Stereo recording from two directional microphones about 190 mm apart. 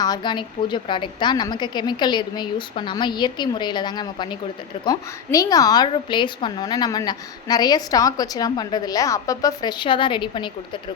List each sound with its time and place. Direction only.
0.0 s a woman's voice: 20° left (ahead or behind)